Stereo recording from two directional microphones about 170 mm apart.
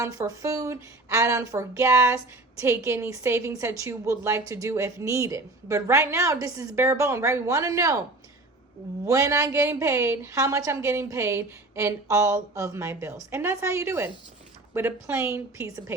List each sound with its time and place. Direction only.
0.0 s speech: 20° right (ahead or behind)
9.0 s speech: 20° right (ahead or behind)